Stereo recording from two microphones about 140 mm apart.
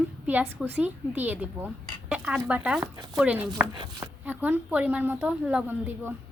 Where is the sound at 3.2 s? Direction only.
10° right (ahead or behind).